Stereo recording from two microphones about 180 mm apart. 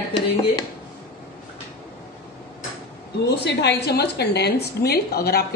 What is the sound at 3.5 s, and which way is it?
A woman's voice, 70° left (ahead or behind).